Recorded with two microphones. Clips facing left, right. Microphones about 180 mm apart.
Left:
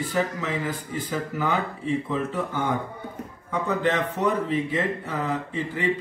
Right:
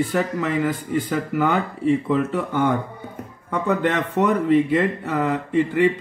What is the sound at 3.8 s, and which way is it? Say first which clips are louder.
Speech: right 3 dB; 60° right (ahead or behind).